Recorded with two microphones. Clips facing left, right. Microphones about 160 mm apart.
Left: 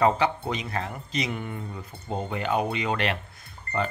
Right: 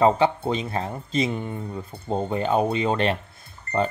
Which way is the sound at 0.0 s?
25° right (ahead or behind).